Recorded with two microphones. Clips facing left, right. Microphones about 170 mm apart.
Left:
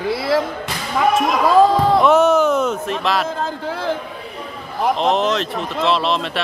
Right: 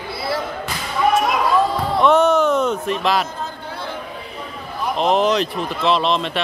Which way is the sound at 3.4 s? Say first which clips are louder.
Left 6 dB; 90° left.